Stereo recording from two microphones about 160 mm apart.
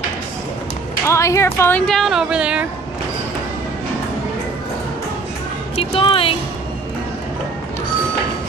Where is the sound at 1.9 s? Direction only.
Centre (ahead or behind).